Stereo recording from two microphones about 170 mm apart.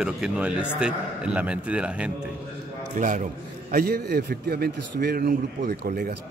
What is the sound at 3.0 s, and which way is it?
A man's voice, 50° right (ahead or behind).